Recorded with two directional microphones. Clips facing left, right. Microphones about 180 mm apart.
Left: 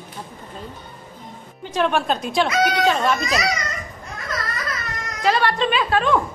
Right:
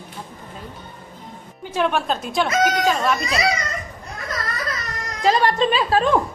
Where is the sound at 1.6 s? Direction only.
10° right (ahead or behind).